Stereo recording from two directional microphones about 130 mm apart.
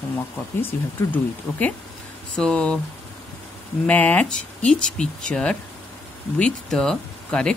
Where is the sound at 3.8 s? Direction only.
10° left (ahead or behind).